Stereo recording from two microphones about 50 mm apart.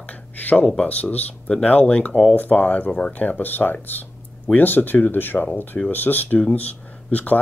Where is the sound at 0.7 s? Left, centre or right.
Left.